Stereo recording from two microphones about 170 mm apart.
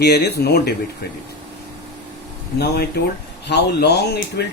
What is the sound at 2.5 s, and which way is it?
Speech, 75° left (ahead or behind).